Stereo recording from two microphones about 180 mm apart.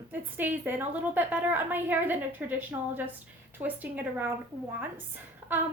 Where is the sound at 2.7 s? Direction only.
20° right (ahead or behind).